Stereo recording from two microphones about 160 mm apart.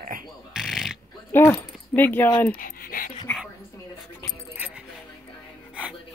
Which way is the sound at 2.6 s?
60° left (ahead or behind).